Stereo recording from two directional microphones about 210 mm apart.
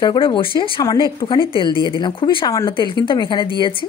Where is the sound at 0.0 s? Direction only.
20° left (ahead or behind).